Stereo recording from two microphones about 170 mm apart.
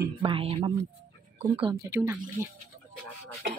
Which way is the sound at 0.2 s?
35° right (ahead or behind).